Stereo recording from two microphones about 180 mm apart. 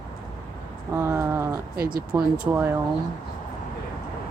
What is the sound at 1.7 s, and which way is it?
Speech, 55° right (ahead or behind).